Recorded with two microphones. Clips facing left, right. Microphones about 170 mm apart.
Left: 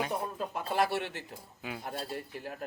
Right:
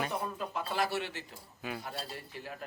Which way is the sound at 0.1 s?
45° left (ahead or behind).